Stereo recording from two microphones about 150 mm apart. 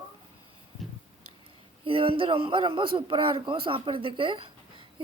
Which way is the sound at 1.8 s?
35° right (ahead or behind).